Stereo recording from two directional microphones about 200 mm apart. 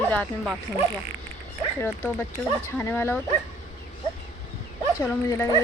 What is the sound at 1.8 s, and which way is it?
Speech, 10° left (ahead or behind).